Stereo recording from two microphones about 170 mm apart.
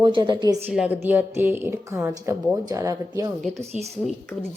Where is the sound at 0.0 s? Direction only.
25° right (ahead or behind).